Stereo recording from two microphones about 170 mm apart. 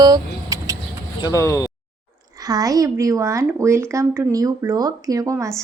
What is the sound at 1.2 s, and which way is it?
Speech, 20° left (ahead or behind).